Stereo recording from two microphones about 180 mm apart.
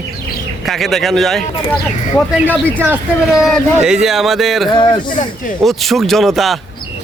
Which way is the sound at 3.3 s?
Centre (ahead or behind).